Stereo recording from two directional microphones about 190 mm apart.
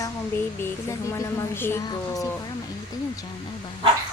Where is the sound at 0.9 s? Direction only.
15° left (ahead or behind).